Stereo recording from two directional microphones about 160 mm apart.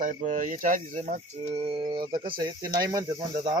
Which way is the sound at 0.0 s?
50° right (ahead or behind).